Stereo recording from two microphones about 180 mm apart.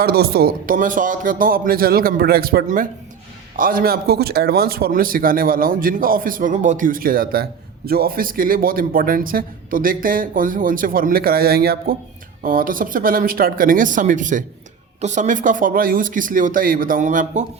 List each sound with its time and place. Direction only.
0.0 s speech: 60° right (ahead or behind)